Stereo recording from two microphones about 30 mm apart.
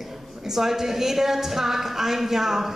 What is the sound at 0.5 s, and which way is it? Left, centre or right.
A woman's voice, centre.